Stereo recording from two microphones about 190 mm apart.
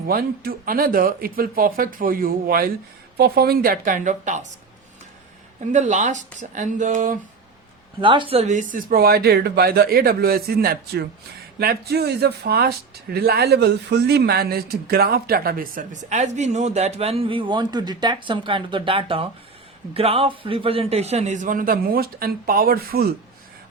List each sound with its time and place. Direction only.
0.1 s speech: 50° right (ahead or behind)
5.5 s a man's voice: 40° right (ahead or behind)
8.0 s a man's voice: 25° right (ahead or behind); by 23.0 s 50° right (ahead or behind)